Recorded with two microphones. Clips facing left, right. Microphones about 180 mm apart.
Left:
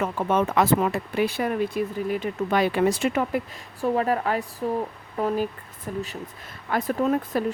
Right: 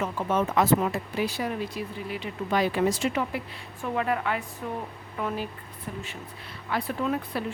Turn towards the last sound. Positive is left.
turn(degrees=45)  # may be behind; listen again after turning